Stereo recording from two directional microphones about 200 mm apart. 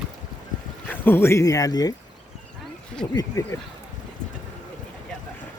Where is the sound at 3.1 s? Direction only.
20° left (ahead or behind).